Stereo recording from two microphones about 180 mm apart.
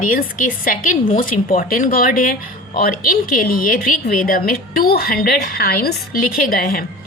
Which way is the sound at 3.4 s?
55° left (ahead or behind).